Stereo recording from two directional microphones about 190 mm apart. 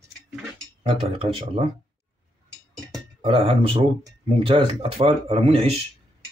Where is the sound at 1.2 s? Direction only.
30° right (ahead or behind).